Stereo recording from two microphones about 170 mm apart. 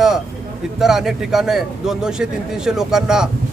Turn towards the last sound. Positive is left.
turn(degrees=-5)  # may be behind; listen again after turning